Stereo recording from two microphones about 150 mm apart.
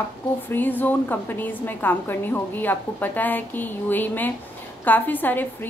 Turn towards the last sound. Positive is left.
turn(degrees=10)  # may be behind; listen again after turning